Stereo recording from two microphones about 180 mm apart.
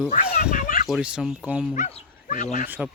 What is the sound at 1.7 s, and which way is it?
Speech, 45° left (ahead or behind).